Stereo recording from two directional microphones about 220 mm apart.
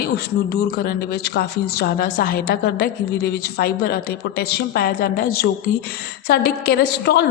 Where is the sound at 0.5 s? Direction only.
50° left (ahead or behind).